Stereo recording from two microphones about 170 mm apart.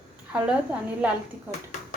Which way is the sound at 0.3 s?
5° right (ahead or behind).